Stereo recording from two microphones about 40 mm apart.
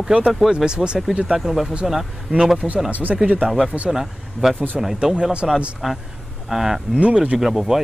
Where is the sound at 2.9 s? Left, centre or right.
Right.